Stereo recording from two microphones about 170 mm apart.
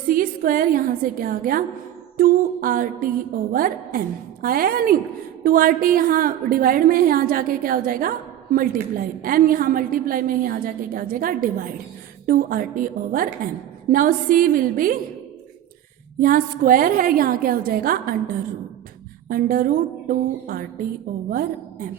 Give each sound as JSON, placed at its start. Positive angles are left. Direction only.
{"t": 0.1, "sound": "a woman's voice", "side_deg": -55}
{"t": 16.2, "sound": "a woman's voice", "side_deg": -55}
{"t": 19.3, "sound": "a woman's voice", "side_deg": -55}